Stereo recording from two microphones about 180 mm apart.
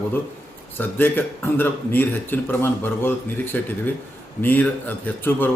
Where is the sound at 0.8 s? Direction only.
10° left (ahead or behind).